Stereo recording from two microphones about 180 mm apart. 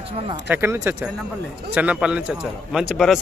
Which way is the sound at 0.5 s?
15° right (ahead or behind).